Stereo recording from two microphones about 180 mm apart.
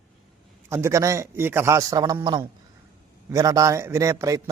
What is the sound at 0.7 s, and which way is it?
A man's voice, 15° right (ahead or behind).